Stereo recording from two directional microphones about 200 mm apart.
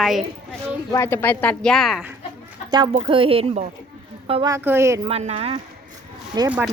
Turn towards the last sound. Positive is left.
turn(degrees=-5)  # may be behind; listen again after turning